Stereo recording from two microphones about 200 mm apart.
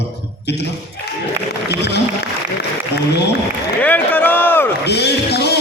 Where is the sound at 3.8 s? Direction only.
10° left (ahead or behind).